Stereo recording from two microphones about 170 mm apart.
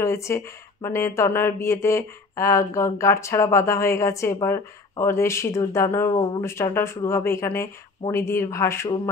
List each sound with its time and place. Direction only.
0.0 s speech: 15° left (ahead or behind)